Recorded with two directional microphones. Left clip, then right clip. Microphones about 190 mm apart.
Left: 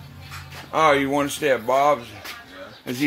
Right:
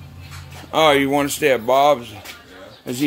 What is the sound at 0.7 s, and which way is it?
Speech, 25° right (ahead or behind).